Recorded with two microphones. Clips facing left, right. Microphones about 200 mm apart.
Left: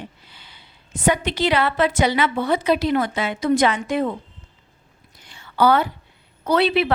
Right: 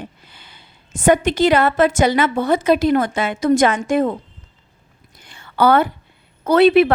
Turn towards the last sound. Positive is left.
turn(degrees=-50)  # may be behind; listen again after turning